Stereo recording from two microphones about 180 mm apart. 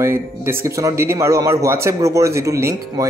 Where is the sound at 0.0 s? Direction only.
15° right (ahead or behind).